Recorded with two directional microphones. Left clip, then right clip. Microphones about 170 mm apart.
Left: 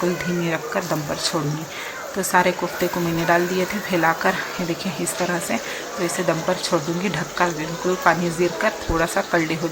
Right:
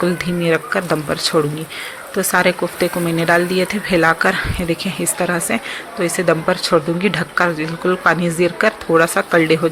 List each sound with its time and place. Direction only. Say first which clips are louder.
0.4 s speech: right 10 dB; 20° right (ahead or behind)